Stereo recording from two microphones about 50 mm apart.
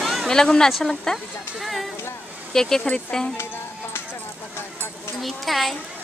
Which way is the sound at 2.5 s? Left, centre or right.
Centre.